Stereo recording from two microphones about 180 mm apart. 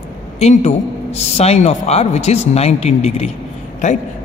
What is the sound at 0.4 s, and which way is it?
A man's voice, 40° left (ahead or behind).